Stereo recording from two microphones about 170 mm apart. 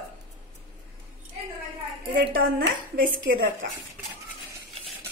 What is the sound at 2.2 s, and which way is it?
A woman's voice, 60° right (ahead or behind).